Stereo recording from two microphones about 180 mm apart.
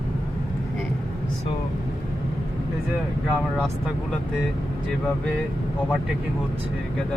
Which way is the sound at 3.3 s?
Centre (ahead or behind).